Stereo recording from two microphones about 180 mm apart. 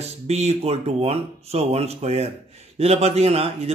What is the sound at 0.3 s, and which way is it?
Speech, 35° right (ahead or behind).